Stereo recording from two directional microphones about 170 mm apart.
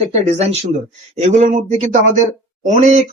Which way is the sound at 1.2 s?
45° right (ahead or behind).